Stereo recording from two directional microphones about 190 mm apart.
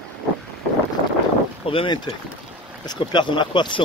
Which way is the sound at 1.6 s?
30° left (ahead or behind).